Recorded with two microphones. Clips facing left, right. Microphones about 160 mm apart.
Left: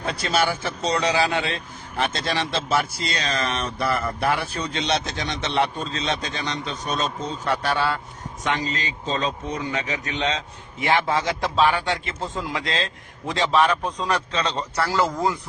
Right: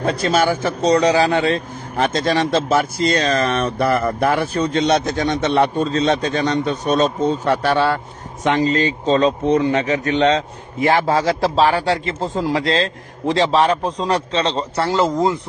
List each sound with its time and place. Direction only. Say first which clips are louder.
0.0 s a man's voice: right 6 dB; 45° right (ahead or behind); by 15.4 s 25° right (ahead or behind)